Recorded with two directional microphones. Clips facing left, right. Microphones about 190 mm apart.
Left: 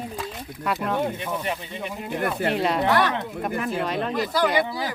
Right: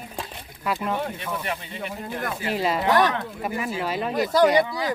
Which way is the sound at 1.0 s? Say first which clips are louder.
Left 3 dB; 15° left (ahead or behind).